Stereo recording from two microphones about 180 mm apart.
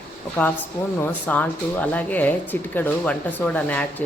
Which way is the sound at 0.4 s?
10° left (ahead or behind).